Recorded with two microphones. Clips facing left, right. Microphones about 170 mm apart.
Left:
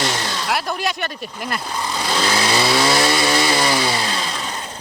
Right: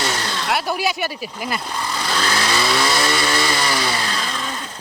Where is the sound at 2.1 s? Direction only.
20° left (ahead or behind).